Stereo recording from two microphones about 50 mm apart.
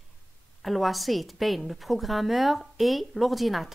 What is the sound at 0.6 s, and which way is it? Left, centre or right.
Speech, centre.